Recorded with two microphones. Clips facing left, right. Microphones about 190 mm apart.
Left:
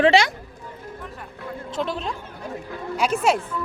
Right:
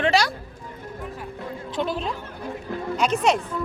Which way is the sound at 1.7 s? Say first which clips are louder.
Right 1 dB; centre (ahead or behind).